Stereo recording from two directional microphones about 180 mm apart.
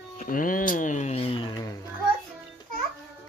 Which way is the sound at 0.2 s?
50° left (ahead or behind).